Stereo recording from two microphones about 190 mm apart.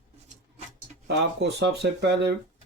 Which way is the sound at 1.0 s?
65° right (ahead or behind).